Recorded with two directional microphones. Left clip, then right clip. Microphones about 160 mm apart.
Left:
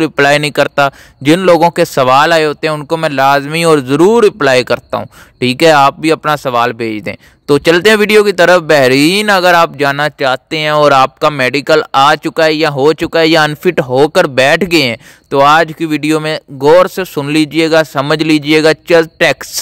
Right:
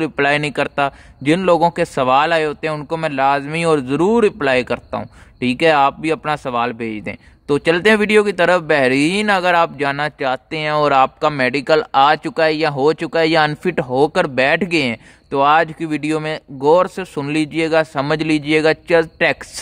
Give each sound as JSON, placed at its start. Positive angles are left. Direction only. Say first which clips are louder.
{"t": 0.0, "sound": "speech", "louder": "left 7 dB", "side_deg": 30}